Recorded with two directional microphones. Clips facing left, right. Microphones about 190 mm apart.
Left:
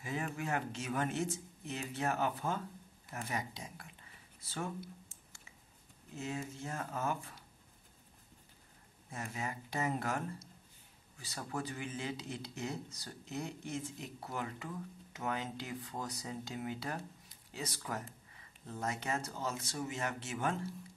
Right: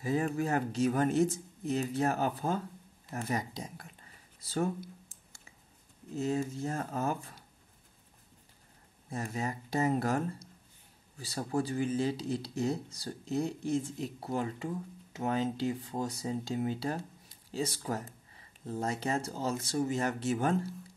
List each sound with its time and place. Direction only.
0.0 s speech: 35° right (ahead or behind)
6.1 s speech: 35° right (ahead or behind)
9.1 s speech: 35° right (ahead or behind)